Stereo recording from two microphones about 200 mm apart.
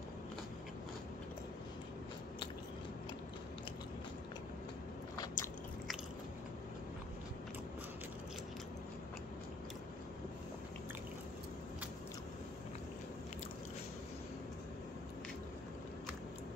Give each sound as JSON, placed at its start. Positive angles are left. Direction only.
{"t": 5.1, "sound": "biting", "side_deg": 15}